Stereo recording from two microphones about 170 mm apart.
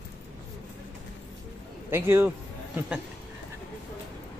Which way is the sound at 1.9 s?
15° right (ahead or behind).